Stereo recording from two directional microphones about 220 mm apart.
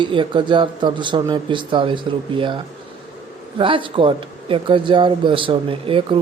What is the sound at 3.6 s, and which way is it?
Speech, 25° right (ahead or behind).